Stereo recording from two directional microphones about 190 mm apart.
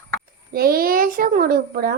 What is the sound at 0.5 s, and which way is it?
A child's voice, 50° right (ahead or behind).